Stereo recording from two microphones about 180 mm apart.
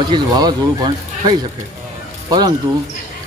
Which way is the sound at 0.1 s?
25° right (ahead or behind).